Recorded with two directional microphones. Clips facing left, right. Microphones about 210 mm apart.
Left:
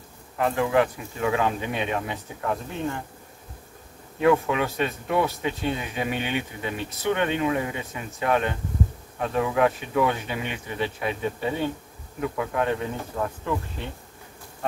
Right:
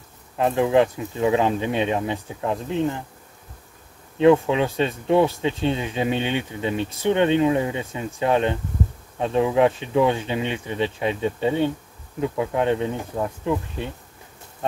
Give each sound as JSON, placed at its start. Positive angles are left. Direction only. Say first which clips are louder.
{"t": 0.4, "sound": "speech", "louder": "right 4 dB", "side_deg": -20}
{"t": 4.2, "sound": "speech", "louder": "right 5 dB", "side_deg": -25}